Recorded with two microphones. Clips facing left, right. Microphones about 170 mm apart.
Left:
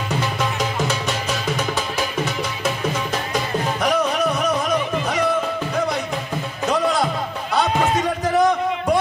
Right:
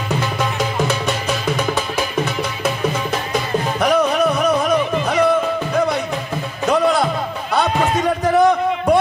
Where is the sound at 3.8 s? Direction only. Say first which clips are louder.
Right 5 dB; 60° right (ahead or behind).